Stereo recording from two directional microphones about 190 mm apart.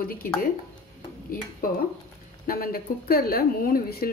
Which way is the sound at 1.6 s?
50° left (ahead or behind).